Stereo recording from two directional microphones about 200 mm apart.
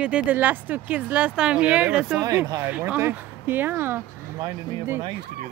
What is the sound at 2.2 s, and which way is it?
Speech, 20° right (ahead or behind).